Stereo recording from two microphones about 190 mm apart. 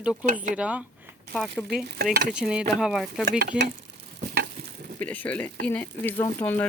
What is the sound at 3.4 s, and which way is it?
Stir, 55° right (ahead or behind).